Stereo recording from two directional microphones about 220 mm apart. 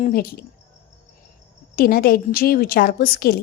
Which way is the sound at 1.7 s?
45° left (ahead or behind).